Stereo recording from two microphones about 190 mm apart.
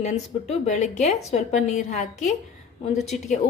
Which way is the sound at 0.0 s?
35° left (ahead or behind).